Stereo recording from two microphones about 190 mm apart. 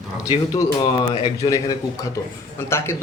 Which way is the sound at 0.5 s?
25° left (ahead or behind).